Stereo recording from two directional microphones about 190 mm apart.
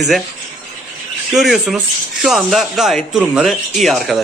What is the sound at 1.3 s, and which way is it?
Speech, centre (ahead or behind).